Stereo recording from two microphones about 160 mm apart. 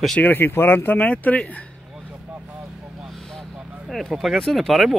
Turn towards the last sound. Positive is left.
turn(degrees=0)  # may be behind; listen again after turning